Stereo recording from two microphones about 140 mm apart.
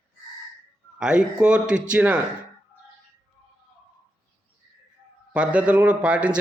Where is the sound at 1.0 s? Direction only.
5° right (ahead or behind).